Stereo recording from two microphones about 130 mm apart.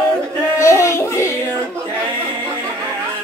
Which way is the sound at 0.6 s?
20° left (ahead or behind).